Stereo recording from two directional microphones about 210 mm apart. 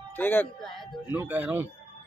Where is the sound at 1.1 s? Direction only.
10° right (ahead or behind).